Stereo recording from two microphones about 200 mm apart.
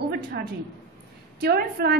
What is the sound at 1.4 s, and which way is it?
Speech, 50° right (ahead or behind).